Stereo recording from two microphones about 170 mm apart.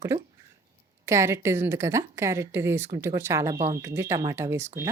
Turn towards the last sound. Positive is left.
turn(degrees=-15)  # may be behind; listen again after turning